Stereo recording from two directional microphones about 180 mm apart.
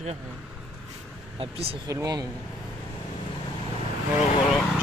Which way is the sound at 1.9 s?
20° right (ahead or behind).